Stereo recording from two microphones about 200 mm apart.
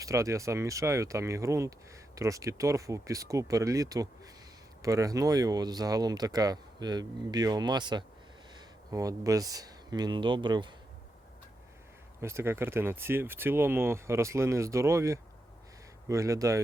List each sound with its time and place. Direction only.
0.0 s speech: 15° right (ahead or behind)
12.2 s speech: 15° right (ahead or behind)